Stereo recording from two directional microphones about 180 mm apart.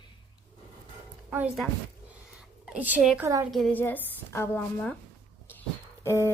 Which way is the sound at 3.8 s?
10° left (ahead or behind).